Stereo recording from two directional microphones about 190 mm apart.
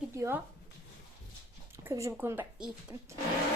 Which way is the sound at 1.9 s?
15° right (ahead or behind).